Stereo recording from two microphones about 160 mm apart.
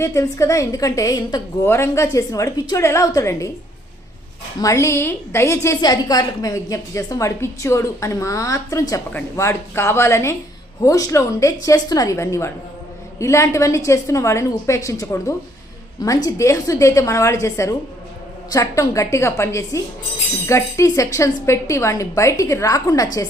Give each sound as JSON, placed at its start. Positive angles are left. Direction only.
{"t": 0.0, "sound": "a woman's voice", "side_deg": 20}
{"t": 4.6, "sound": "a woman's voice", "side_deg": 20}